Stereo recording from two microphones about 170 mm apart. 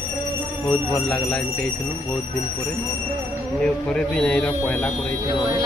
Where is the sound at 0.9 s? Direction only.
5° left (ahead or behind).